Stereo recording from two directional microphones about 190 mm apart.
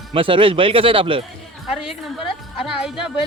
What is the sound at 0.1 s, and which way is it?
Speech, 25° right (ahead or behind).